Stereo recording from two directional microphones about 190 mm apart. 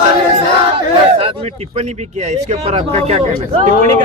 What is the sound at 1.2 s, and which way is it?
Speech, 30° right (ahead or behind).